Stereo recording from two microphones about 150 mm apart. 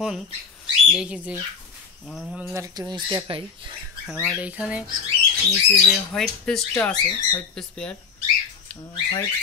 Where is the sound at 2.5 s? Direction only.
25° right (ahead or behind).